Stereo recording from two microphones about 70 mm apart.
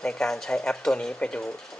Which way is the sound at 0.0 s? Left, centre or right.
Centre.